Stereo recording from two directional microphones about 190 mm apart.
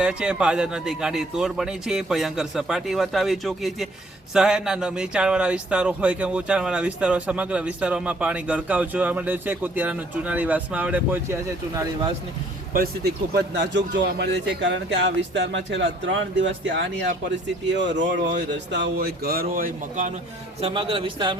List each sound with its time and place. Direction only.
0.0 s a man's voice: 5° right (ahead or behind)
13.3 s a man's voice: 65° right (ahead or behind)
16.6 s a man's voice: 65° right (ahead or behind); by 20.1 s 50° right (ahead or behind)
20.6 s speech: 30° right (ahead or behind)